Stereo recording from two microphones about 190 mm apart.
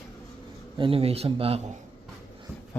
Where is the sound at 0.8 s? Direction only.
30° right (ahead or behind).